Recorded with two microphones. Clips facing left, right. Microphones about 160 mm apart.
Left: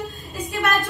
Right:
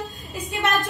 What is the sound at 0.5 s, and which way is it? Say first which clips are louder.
Speech: left 1 dB; 20° right (ahead or behind).